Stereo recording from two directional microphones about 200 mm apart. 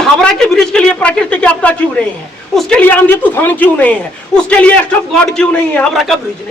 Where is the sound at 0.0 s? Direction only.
5° left (ahead or behind).